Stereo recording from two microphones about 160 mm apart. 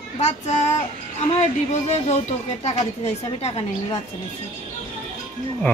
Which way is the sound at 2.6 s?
40° left (ahead or behind).